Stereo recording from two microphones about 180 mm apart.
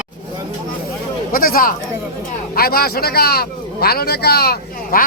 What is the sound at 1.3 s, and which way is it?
Speech, 50° left (ahead or behind).